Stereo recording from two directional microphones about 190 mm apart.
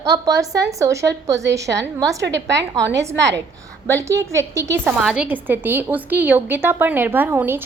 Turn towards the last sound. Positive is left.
turn(degrees=-10)  # may be behind; listen again after turning